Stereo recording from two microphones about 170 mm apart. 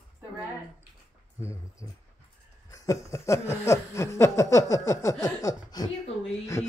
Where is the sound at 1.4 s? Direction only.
15° left (ahead or behind).